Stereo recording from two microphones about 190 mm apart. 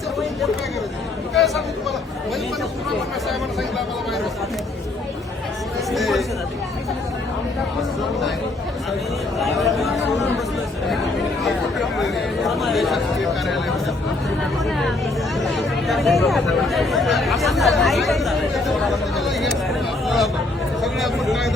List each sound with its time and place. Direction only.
1.3 s speech: centre (ahead or behind)
5.9 s speech: centre (ahead or behind)
9.4 s chatter: centre (ahead or behind)
11.4 s chatter: centre (ahead or behind)
15.4 s speech: centre (ahead or behind)
20.1 s a sound: centre (ahead or behind)
20.8 s vehicle: centre (ahead or behind)